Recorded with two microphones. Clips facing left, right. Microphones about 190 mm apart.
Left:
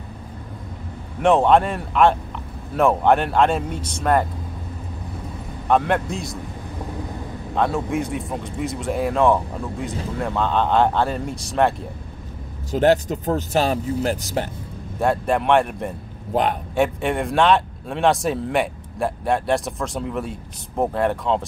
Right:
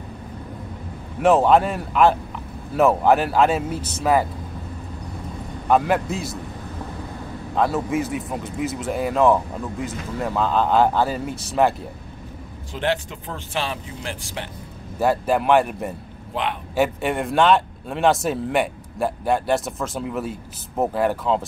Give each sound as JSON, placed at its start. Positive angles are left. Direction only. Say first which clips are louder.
{"t": 1.2, "sound": "speech", "louder": "even", "side_deg": 0}
{"t": 5.7, "sound": "speech", "louder": "even", "side_deg": -5}
{"t": 7.5, "sound": "speech", "louder": "even", "side_deg": 0}
{"t": 12.7, "sound": "speech", "louder": "left 7 dB", "side_deg": 40}
{"t": 15.0, "sound": "speech", "louder": "even", "side_deg": 0}
{"t": 16.3, "sound": "a man's voice", "louder": "left 6 dB", "side_deg": 45}
{"t": 16.7, "sound": "speech", "louder": "right 1 dB", "side_deg": 0}